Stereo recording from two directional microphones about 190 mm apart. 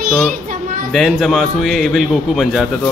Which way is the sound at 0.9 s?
Centre (ahead or behind).